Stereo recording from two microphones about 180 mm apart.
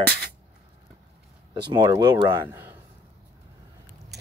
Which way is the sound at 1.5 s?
20° right (ahead or behind).